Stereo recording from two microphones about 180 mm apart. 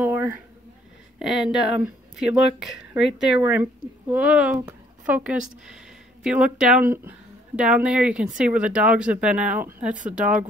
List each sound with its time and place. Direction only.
0.0 s a sound: 10° right (ahead or behind)
1.2 s a woman's voice: centre (ahead or behind)
9.8 s speech: 45° right (ahead or behind)